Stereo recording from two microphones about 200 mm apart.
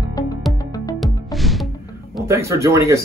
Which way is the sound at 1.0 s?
Centre (ahead or behind).